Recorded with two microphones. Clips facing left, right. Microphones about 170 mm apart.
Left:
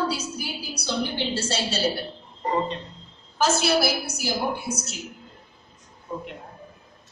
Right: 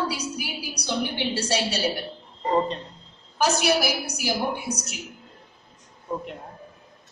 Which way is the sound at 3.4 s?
15° right (ahead or behind).